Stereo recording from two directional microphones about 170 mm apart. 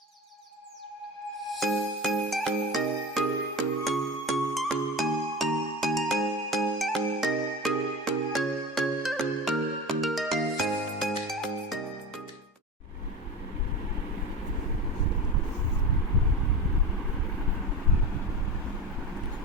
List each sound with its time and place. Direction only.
1.5 s music: centre (ahead or behind)